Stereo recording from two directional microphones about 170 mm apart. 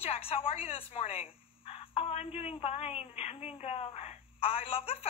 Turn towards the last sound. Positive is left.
turn(degrees=35)  # may be behind; listen again after turning